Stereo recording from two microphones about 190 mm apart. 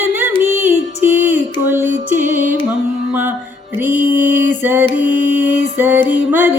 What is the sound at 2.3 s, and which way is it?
Music, 40° right (ahead or behind).